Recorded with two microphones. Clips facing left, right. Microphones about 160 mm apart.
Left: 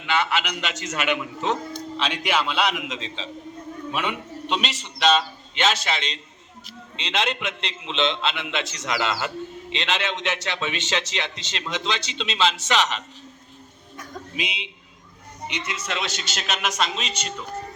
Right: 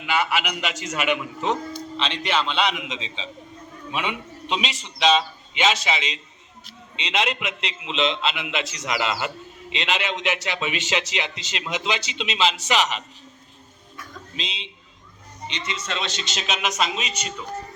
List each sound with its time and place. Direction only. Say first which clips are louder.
0.0 s a man's voice: even; 5° right (ahead or behind)
13.9 s music: left 3 dB; 40° left (ahead or behind)
14.3 s a man's voice: left 2 dB; 10° left (ahead or behind)